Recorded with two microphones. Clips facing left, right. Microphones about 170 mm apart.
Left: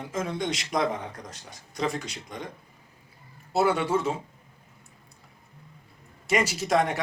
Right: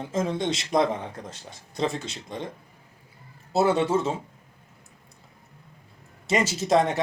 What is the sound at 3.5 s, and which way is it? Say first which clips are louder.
Speech: right 2 dB; 25° right (ahead or behind).